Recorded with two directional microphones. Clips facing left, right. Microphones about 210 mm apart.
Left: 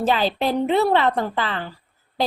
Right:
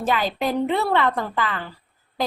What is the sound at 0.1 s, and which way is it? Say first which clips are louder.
A woman's voice: even; 30° left (ahead or behind).